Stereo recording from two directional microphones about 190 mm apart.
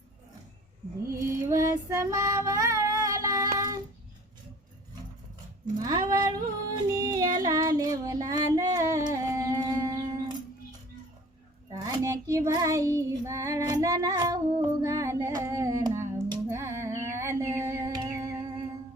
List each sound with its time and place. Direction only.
1.0 s female singing: 15° right (ahead or behind)
5.7 s speech: 20° right (ahead or behind)
6.9 s yodeling: 20° right (ahead or behind)
7.3 s female singing: 20° right (ahead or behind)
11.7 s child singing: 20° right (ahead or behind)